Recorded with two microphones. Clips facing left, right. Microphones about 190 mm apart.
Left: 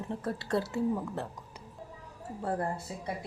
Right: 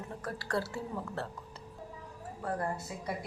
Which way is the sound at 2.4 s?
30° left (ahead or behind).